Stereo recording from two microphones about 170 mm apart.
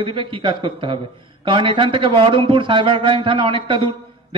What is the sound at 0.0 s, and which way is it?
A man's voice, 30° right (ahead or behind).